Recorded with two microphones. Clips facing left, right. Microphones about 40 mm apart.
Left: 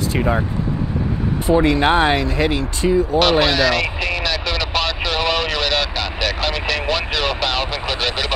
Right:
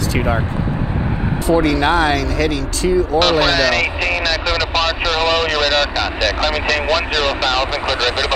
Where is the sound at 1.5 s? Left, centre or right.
Left.